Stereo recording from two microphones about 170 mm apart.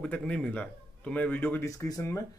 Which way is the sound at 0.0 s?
5° left (ahead or behind).